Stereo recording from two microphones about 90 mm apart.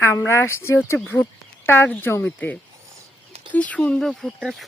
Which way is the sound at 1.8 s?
20° left (ahead or behind).